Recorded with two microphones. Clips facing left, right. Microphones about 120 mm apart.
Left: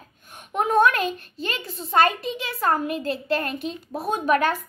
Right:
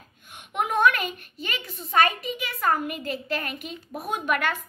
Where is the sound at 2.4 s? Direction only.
30° left (ahead or behind).